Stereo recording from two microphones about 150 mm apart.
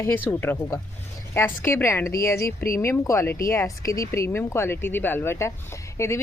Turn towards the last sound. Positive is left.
turn(degrees=20)  # may be behind; listen again after turning